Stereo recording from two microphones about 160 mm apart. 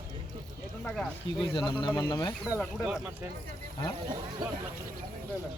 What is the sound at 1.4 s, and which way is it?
Speech, 30° left (ahead or behind).